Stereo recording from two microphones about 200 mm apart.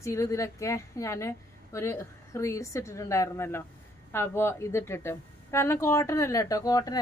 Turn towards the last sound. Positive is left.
turn(degrees=20)  # may be behind; listen again after turning